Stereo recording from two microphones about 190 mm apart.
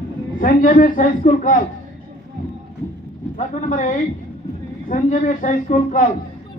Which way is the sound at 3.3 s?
40° left (ahead or behind).